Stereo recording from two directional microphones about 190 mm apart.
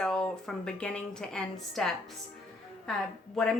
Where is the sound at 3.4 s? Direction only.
Centre (ahead or behind).